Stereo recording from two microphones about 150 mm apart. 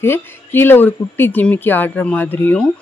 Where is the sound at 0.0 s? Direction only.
15° left (ahead or behind).